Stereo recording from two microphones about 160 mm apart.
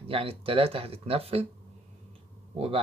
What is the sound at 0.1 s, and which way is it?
Speech, 35° right (ahead or behind).